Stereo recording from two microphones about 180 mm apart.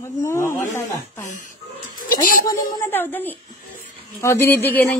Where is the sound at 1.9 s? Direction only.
50° left (ahead or behind).